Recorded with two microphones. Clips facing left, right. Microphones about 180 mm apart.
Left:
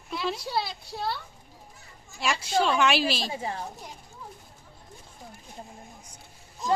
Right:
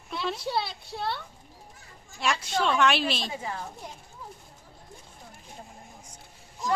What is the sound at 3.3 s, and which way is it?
Speech, 30° left (ahead or behind).